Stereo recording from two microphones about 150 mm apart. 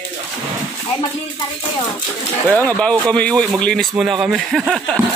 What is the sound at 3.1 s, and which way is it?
Speech, 5° left (ahead or behind).